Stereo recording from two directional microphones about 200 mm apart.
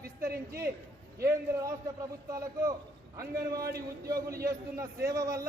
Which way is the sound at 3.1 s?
15° right (ahead or behind).